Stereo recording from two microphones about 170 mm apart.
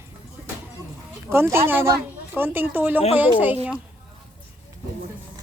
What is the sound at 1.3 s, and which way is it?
A woman's voice, 15° right (ahead or behind).